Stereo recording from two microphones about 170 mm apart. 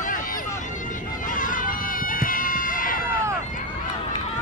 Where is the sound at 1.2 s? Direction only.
50° left (ahead or behind).